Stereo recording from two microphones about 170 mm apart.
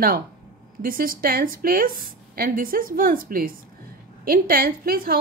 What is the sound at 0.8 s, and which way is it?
Speech, 55° right (ahead or behind).